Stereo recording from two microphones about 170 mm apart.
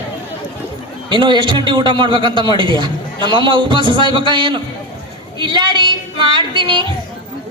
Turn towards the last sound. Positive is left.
turn(degrees=-30)  # may be behind; listen again after turning